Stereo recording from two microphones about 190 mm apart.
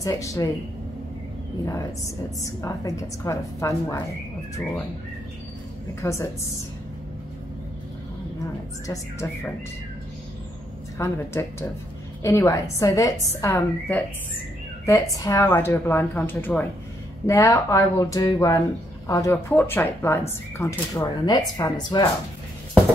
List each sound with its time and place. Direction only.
0.0 s speech: 15° left (ahead or behind)
2.4 s speech: 15° left (ahead or behind)
5.9 s speech: 15° left (ahead or behind)
8.8 s speech: 15° left (ahead or behind)
11.0 s speech: 15° left (ahead or behind)